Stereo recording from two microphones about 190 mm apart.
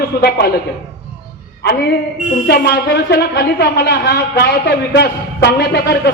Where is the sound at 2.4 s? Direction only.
60° left (ahead or behind).